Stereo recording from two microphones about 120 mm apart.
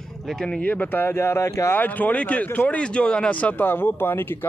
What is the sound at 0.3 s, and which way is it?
Speech, 5° left (ahead or behind).